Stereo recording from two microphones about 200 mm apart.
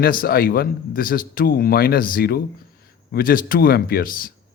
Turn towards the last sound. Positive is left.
turn(degrees=45)  # may be behind; listen again after turning